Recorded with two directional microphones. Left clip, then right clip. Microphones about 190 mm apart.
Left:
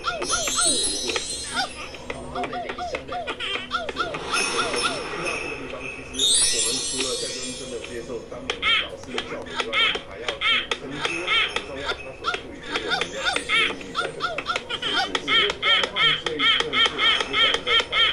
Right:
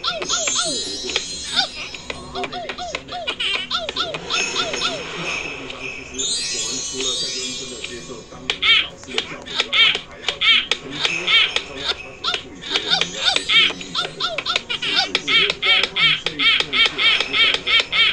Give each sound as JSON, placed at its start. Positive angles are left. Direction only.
{"t": 0.0, "sound": "music", "side_deg": 0}
{"t": 0.7, "sound": "music", "side_deg": 20}
{"t": 1.1, "sound": "music", "side_deg": 0}
{"t": 4.3, "sound": "music", "side_deg": 20}
{"t": 5.1, "sound": "jingle bell", "side_deg": 0}
{"t": 6.1, "sound": "music", "side_deg": 20}
{"t": 8.5, "sound": "a sound", "side_deg": 0}